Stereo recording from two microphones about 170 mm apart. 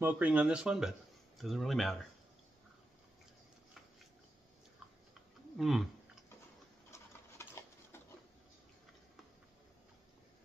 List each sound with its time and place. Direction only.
0.0 s speech: 10° right (ahead or behind)
5.6 s speech: centre (ahead or behind)
6.9 s pigeon: 15° left (ahead or behind)